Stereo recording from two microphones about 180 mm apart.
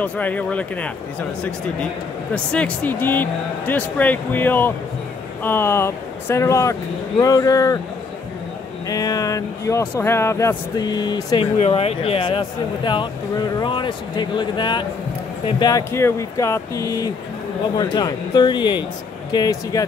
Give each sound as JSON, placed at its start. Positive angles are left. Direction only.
{"t": 0.0, "sound": "speech", "side_deg": 10}
{"t": 2.3, "sound": "speech", "side_deg": 5}
{"t": 8.8, "sound": "speech", "side_deg": 20}
{"t": 11.5, "sound": "speech", "side_deg": 35}